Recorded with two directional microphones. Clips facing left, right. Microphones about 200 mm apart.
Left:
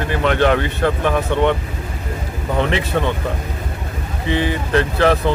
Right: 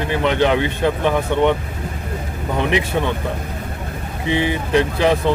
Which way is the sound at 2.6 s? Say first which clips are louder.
Right 1 dB; 15° right (ahead or behind).